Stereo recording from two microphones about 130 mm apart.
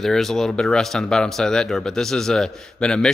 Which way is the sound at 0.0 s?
5° left (ahead or behind).